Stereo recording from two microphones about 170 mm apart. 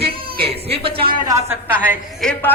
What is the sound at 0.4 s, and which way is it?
Speech, 35° right (ahead or behind).